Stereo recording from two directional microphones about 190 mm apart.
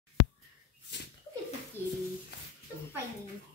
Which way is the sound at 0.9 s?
70° left (ahead or behind).